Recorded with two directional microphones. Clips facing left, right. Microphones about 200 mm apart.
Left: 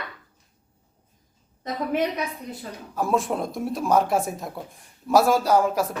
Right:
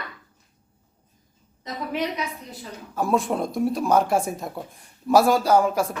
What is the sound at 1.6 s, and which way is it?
Speech, 55° left (ahead or behind).